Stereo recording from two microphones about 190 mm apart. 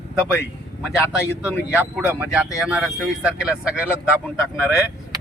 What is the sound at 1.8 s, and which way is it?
Speech, 10° right (ahead or behind).